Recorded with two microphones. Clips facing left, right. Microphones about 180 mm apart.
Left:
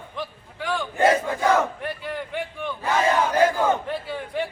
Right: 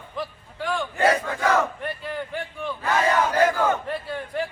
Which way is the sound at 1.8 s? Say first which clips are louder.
Even; centre (ahead or behind).